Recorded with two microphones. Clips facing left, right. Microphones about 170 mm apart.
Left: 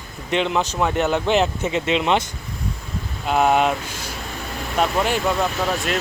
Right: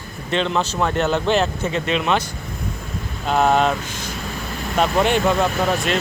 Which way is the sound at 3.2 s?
10° left (ahead or behind).